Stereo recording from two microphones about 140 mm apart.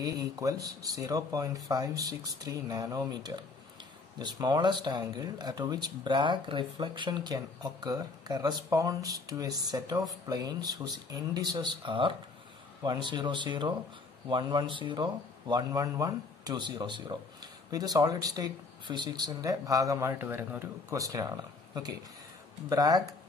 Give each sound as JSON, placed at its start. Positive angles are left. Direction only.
{"t": 0.0, "sound": "speech", "side_deg": -25}